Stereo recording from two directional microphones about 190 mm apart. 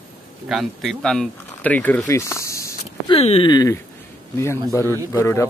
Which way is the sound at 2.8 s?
35° left (ahead or behind).